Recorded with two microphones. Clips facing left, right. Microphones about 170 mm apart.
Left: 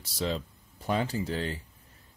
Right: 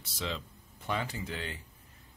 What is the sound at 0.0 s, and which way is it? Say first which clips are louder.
Speech: left 6 dB; 40° left (ahead or behind).